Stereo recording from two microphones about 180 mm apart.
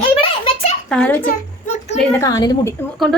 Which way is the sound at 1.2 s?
45° left (ahead or behind).